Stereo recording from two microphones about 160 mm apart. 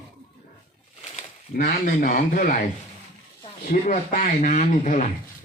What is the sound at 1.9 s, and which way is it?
Speech, 55° left (ahead or behind).